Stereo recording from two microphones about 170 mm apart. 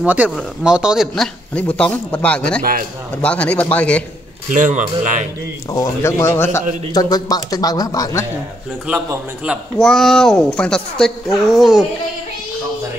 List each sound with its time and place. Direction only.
0.0 s a man's voice: 10° right (ahead or behind); by 4.0 s 5° left (ahead or behind)
4.5 s speech: 50° right (ahead or behind)
5.7 s speech: 20° left (ahead or behind)
8.8 s a man's voice: 10° right (ahead or behind)
9.8 s speech: 5° left (ahead or behind)